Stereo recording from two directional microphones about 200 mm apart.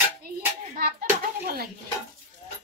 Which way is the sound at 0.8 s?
50° right (ahead or behind).